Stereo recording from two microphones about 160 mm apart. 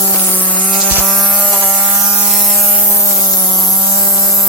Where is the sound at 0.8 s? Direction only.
10° right (ahead or behind).